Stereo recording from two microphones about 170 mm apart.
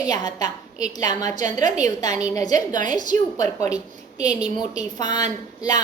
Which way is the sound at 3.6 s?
20° left (ahead or behind).